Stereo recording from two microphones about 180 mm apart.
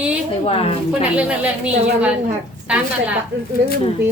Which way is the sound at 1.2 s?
5° right (ahead or behind).